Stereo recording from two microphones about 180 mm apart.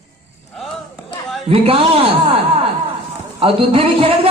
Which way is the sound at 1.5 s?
30° right (ahead or behind).